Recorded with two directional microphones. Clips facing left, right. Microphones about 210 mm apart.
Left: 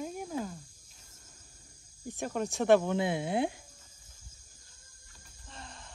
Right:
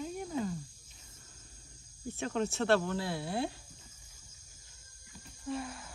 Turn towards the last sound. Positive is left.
turn(degrees=-5)  # may be behind; listen again after turning